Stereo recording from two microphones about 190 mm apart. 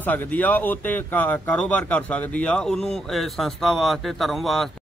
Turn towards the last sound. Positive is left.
turn(degrees=0)  # may be behind; listen again after turning